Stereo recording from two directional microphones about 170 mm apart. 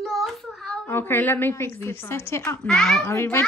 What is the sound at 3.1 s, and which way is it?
Speech, 15° left (ahead or behind).